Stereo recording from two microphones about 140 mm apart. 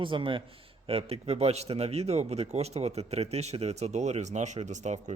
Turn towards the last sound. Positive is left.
turn(degrees=-55)  # may be behind; listen again after turning